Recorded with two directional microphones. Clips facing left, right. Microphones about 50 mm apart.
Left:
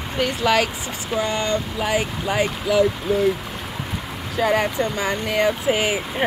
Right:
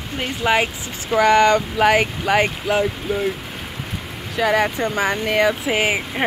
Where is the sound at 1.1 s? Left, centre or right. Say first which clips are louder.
Right 9 dB; right.